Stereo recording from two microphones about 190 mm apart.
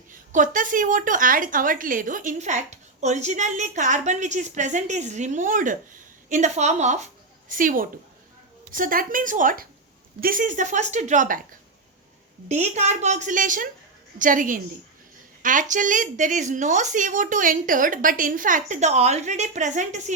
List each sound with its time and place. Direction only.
0.1 s a woman's voice: 45° right (ahead or behind)
12.5 s a woman's voice: 35° right (ahead or behind)